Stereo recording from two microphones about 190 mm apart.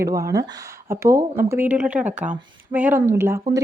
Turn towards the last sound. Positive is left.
turn(degrees=-15)  # may be behind; listen again after turning